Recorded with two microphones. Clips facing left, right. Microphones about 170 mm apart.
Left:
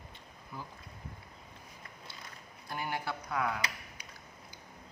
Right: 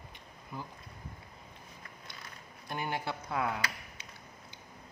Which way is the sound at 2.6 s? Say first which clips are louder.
Right 1 dB; 20° right (ahead or behind).